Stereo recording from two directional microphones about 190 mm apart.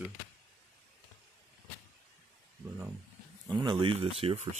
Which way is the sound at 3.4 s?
20° right (ahead or behind).